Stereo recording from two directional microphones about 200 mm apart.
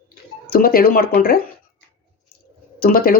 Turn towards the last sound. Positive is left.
turn(degrees=50)  # may be behind; listen again after turning